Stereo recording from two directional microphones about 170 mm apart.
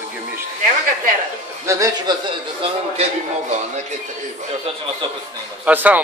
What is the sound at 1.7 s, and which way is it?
Speech, 20° right (ahead or behind).